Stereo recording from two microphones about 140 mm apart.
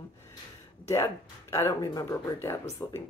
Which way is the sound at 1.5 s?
20° left (ahead or behind).